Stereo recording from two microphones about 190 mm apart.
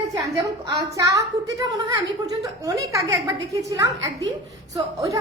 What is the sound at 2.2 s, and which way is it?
A woman's voice, 20° right (ahead or behind).